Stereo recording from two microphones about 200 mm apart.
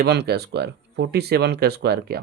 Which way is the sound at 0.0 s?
55° right (ahead or behind).